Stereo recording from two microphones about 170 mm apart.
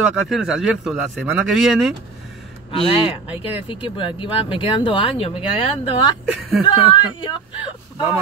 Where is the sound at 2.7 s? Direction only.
35° left (ahead or behind).